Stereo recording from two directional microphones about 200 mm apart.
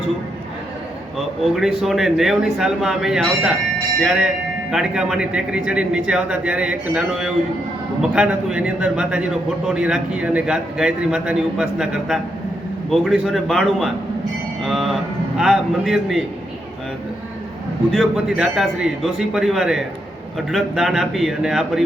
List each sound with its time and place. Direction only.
1.4 s a man's voice: centre (ahead or behind)
17.9 s a man's voice: centre (ahead or behind)